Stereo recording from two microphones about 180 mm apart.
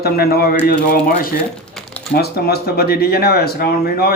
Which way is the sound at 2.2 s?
60° left (ahead or behind).